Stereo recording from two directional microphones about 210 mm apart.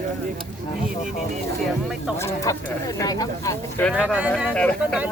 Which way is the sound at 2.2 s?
15° left (ahead or behind).